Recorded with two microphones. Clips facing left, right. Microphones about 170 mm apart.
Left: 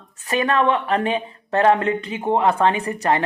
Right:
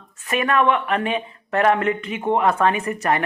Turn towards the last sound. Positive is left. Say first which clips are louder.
# left 1 dB
turn(degrees=30)  # may be behind; listen again after turning